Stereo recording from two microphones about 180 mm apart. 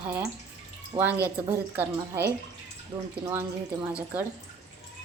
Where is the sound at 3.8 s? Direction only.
10° right (ahead or behind).